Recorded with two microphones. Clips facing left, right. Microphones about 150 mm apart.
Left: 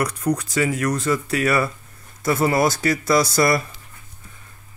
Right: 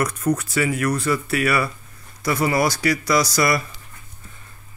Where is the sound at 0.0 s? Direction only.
15° left (ahead or behind).